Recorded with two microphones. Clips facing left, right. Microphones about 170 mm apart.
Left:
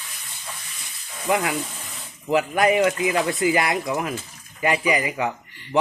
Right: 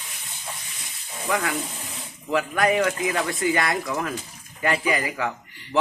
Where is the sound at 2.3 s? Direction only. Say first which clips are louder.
Left 3 dB; 20° left (ahead or behind).